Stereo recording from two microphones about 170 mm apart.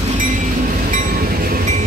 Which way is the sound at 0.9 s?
55° right (ahead or behind).